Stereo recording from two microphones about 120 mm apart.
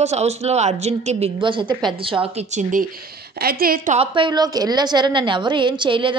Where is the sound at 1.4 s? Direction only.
40° right (ahead or behind).